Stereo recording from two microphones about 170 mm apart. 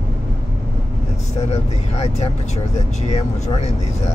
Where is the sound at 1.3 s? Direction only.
40° left (ahead or behind).